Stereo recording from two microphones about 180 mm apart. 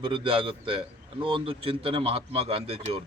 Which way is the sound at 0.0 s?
30° right (ahead or behind).